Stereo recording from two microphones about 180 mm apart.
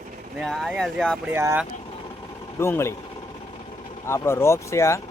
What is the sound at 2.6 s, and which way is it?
Speech, 15° left (ahead or behind).